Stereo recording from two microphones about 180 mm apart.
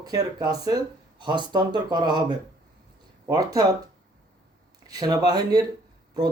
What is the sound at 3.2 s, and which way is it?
Speech, 20° right (ahead or behind).